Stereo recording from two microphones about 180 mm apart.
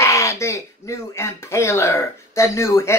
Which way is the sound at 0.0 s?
15° left (ahead or behind).